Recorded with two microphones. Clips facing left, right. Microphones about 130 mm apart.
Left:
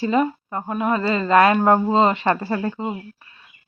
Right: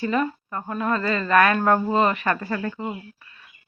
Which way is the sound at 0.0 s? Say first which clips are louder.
Left 4 dB; 20° left (ahead or behind).